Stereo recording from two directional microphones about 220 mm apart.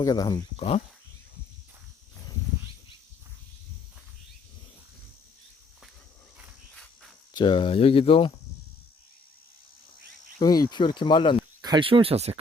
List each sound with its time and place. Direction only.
0.0 s speech: 15° left (ahead or behind)
7.3 s speech: 20° left (ahead or behind)
10.4 s speech: 15° left (ahead or behind)
11.6 s speech: 20° right (ahead or behind)